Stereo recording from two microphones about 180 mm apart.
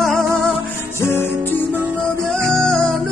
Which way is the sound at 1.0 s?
10° left (ahead or behind).